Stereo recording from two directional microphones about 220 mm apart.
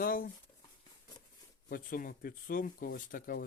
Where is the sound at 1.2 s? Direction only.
20° left (ahead or behind).